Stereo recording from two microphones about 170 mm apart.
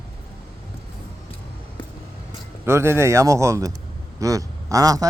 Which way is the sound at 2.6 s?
15° right (ahead or behind).